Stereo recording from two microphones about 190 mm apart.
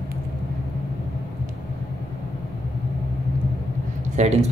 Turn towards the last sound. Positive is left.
turn(degrees=-35)  # may be behind; listen again after turning